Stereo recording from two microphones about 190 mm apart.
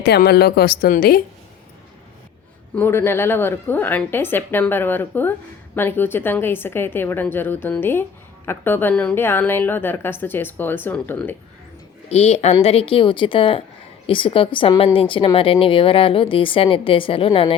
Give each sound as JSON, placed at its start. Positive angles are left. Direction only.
{"t": 0.0, "sound": "a woman's voice", "side_deg": 55}
{"t": 2.7, "sound": "a woman's voice", "side_deg": 10}
{"t": 12.0, "sound": "a woman's voice", "side_deg": 35}